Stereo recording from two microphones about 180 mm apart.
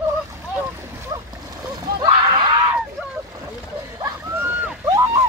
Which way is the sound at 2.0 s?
25° right (ahead or behind).